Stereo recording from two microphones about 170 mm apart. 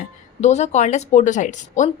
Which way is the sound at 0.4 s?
40° left (ahead or behind).